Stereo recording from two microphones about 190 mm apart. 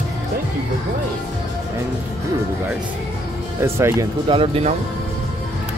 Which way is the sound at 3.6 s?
15° right (ahead or behind).